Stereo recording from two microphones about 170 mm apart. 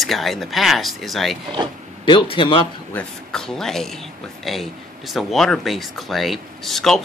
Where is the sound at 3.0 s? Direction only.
5° left (ahead or behind).